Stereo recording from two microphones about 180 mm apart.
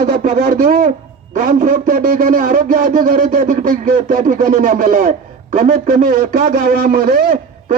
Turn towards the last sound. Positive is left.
turn(degrees=-50)  # may be behind; listen again after turning